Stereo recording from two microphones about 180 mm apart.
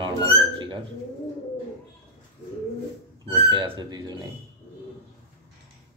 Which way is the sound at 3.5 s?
25° right (ahead or behind).